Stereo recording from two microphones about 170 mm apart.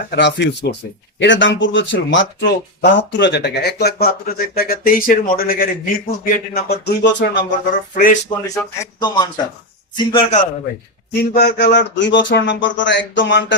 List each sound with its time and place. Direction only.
0.1 s speech: 90° left
7.9 s speech: 55° left (ahead or behind)
8.4 s a man's voice: 20° left (ahead or behind); by 10.4 s 35° left (ahead or behind)
11.2 s speech: 65° left (ahead or behind); by 13.4 s 90° left